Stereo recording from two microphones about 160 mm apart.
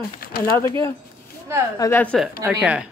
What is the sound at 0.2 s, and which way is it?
Speech, 65° left (ahead or behind).